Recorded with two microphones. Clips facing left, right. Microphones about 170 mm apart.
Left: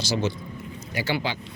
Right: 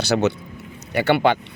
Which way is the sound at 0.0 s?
65° right (ahead or behind).